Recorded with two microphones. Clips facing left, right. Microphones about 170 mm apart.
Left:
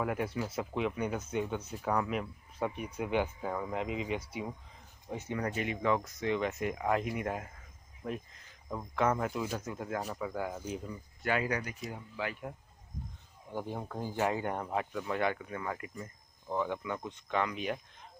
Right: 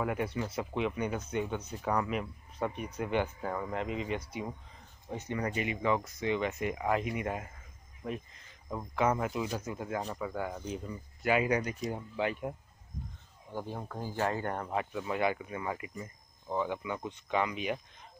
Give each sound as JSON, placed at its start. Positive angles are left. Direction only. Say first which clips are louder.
{"t": 0.0, "sound": "speech", "louder": "right 1 dB", "side_deg": 0}
{"t": 8.6, "sound": "speech", "louder": "right 1 dB", "side_deg": -5}
{"t": 11.2, "sound": "speech", "louder": "right 4 dB", "side_deg": -15}
{"t": 13.5, "sound": "speech", "louder": "left 1 dB", "side_deg": 5}
{"t": 13.9, "sound": "speech", "louder": "left 1 dB", "side_deg": 20}